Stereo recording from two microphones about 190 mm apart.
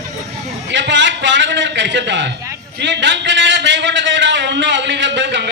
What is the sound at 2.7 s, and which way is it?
A man's voice, 65° right (ahead or behind).